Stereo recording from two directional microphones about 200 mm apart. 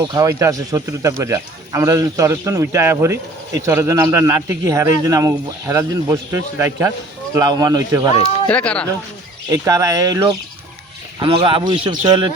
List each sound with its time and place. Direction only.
0.0 s a man's voice: 20° right (ahead or behind)
8.4 s speech: 5° left (ahead or behind)
9.5 s a man's voice: 15° right (ahead or behind)